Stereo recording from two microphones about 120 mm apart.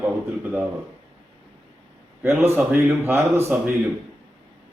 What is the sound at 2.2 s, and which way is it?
A man's voice, 20° right (ahead or behind).